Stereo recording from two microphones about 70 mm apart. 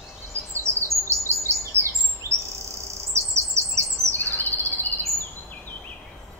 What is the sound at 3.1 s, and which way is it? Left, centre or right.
Bird, right.